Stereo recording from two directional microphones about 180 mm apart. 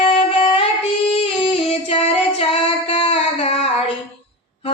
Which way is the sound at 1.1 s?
30° left (ahead or behind).